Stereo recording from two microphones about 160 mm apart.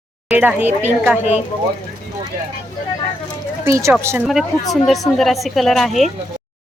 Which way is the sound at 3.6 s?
15° right (ahead or behind).